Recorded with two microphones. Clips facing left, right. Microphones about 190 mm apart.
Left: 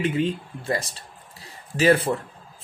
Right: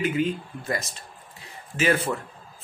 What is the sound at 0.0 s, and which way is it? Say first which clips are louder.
Speech: left 1 dB; 30° left (ahead or behind).